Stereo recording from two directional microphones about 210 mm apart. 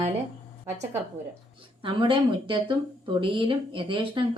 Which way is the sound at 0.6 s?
10° right (ahead or behind).